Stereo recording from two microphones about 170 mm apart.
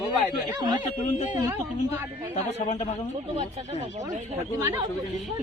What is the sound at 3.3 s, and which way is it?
Speech, 40° right (ahead or behind).